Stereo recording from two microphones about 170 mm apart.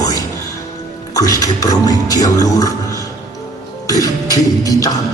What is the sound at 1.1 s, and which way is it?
A man's voice, 20° left (ahead or behind).